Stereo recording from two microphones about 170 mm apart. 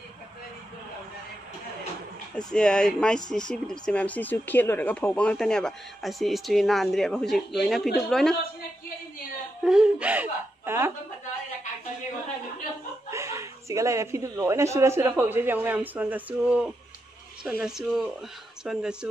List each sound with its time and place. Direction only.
2.3 s speech: 5° left (ahead or behind)
9.7 s speech: 5° right (ahead or behind)
13.1 s speech: 15° right (ahead or behind)